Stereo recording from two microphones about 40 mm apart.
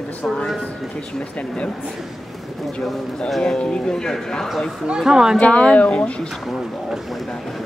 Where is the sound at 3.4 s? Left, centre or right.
Left.